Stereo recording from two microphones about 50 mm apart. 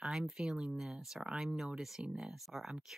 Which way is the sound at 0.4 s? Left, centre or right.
Centre.